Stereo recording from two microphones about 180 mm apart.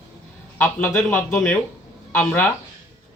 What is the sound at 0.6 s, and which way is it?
Speech, 10° left (ahead or behind).